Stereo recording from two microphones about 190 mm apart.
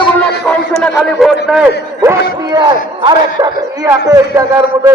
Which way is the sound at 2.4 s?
20° right (ahead or behind).